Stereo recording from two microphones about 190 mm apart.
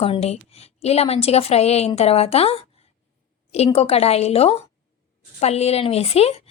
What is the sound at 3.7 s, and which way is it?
A woman's voice, 35° left (ahead or behind).